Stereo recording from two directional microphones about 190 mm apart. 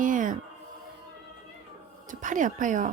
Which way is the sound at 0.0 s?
45° right (ahead or behind).